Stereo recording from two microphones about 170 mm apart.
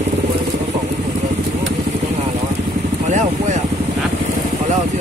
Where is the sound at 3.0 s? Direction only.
45° right (ahead or behind).